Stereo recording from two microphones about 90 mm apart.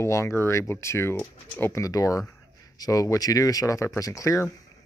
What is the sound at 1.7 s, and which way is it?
Speech, 40° left (ahead or behind).